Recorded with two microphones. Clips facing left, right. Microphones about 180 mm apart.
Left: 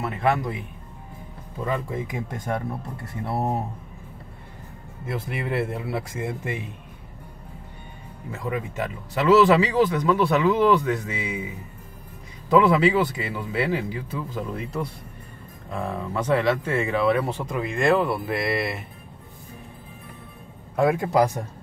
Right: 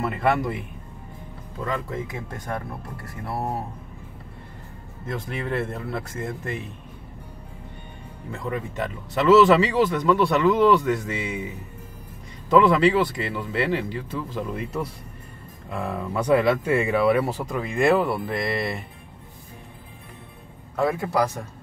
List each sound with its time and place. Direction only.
0.0 s speech: centre (ahead or behind)
1.6 s a man's voice: 10° left (ahead or behind)
5.0 s a man's voice: 10° left (ahead or behind)
8.3 s speech: 5° left (ahead or behind)
12.4 s speech: 5° left (ahead or behind)
20.7 s a man's voice: 15° left (ahead or behind)